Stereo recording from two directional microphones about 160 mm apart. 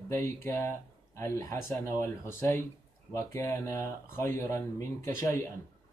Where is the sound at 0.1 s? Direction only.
15° left (ahead or behind).